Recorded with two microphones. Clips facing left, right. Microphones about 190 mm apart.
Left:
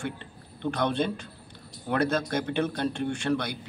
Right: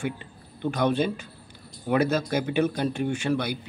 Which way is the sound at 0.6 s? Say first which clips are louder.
Right 3 dB; 5° right (ahead or behind).